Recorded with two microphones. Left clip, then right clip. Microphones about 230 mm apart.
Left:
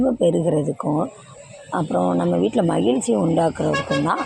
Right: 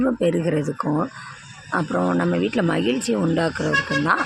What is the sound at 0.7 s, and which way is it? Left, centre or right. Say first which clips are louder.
Speech: left 1 dB; centre.